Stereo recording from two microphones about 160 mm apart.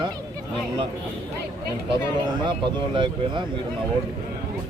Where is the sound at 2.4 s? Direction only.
30° right (ahead or behind).